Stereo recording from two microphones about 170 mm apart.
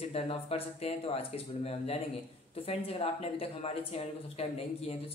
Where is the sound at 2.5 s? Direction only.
35° left (ahead or behind).